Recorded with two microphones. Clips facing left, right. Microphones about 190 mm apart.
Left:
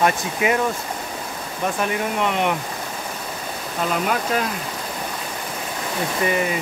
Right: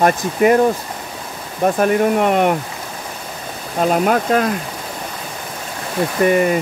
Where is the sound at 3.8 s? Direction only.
45° right (ahead or behind).